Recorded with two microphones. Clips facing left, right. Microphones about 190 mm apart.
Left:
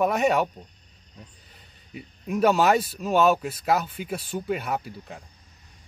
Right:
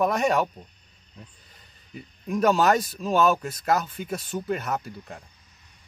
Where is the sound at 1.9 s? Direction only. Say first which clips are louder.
Even; 5° left (ahead or behind).